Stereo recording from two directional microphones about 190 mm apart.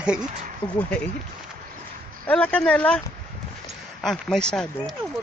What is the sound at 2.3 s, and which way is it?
Speech, 5° left (ahead or behind).